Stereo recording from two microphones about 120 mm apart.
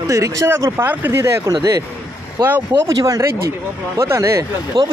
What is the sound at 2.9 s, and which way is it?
Speech, 30° right (ahead or behind).